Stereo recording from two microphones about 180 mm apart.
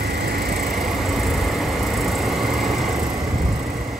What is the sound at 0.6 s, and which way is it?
Vehicle, centre (ahead or behind).